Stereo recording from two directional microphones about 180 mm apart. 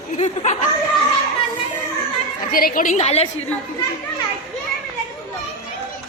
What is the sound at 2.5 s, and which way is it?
Speech, 50° left (ahead or behind).